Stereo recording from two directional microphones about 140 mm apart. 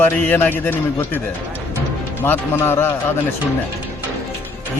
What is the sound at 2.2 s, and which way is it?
Speech, 15° left (ahead or behind).